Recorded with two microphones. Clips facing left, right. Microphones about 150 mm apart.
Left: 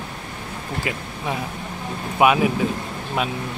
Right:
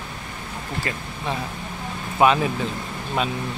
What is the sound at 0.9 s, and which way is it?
Speech, 10° left (ahead or behind).